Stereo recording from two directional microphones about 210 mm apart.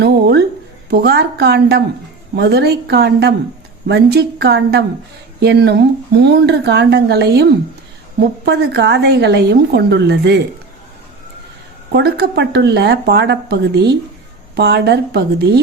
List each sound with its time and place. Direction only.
0.0 s a sound: 55° right (ahead or behind)
0.9 s speech: 50° right (ahead or behind)
8.4 s speech: 50° right (ahead or behind)
11.9 s speech: 50° right (ahead or behind)